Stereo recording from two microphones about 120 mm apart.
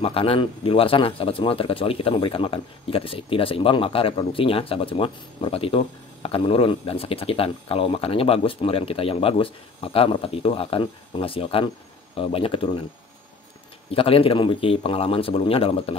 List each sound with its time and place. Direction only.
0.0 s speech: 50° left (ahead or behind)
13.9 s speech: 50° left (ahead or behind)